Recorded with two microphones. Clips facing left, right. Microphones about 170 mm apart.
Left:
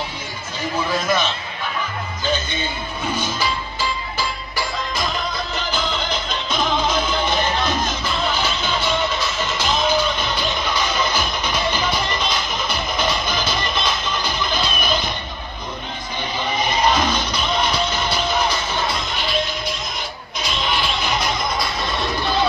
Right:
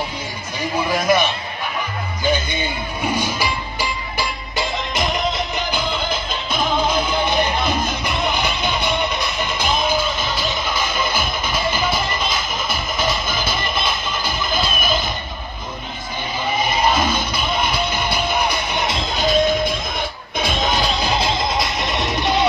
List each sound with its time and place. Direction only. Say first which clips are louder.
0.7 s a man's voice: right 3 dB; 10° right (ahead or behind)
2.2 s music: right 3 dB; 10° right (ahead or behind)
16.5 s music: even; 5° right (ahead or behind)
19.0 s music: right 7 dB; 40° right (ahead or behind); by 22.5 s 20° right (ahead or behind)